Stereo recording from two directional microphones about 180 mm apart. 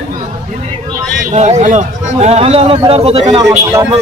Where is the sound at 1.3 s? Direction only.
40° right (ahead or behind).